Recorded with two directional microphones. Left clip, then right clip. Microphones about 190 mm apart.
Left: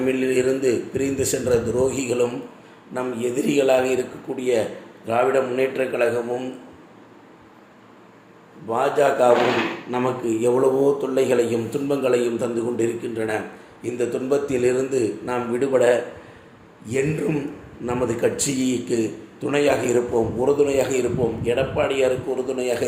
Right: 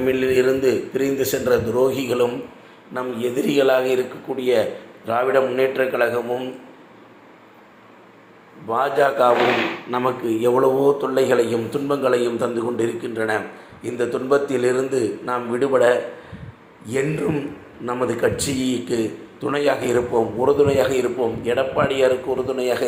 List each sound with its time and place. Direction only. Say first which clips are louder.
0.0 s a man's voice: right 3 dB; centre (ahead or behind)
8.6 s a man's voice: right 1 dB; 5° left (ahead or behind)
17.8 s a man's voice: right 1 dB; 5° left (ahead or behind)